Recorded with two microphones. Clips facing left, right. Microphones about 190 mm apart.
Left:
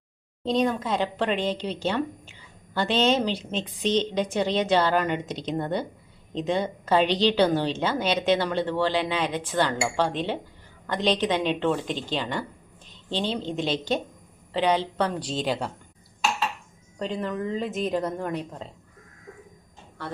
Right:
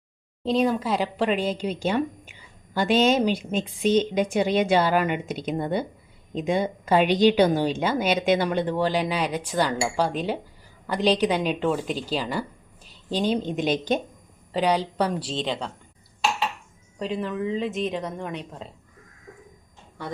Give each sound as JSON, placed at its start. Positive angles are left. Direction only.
{"t": 0.4, "sound": "a woman's voice", "side_deg": -5}
{"t": 15.3, "sound": "speech", "side_deg": 5}
{"t": 17.0, "sound": "speech", "side_deg": -5}